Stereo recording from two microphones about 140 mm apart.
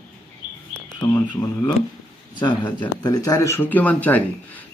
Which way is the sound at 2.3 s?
35° left (ahead or behind).